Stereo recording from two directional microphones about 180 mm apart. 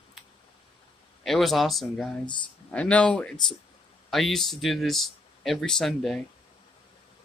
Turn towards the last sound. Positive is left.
turn(degrees=0)  # may be behind; listen again after turning